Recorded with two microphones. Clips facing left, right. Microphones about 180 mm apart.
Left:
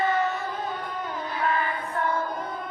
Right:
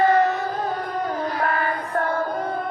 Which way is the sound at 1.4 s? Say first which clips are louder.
Even; 65° right (ahead or behind).